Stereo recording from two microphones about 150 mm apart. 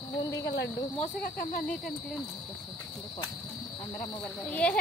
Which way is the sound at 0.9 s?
50° left (ahead or behind).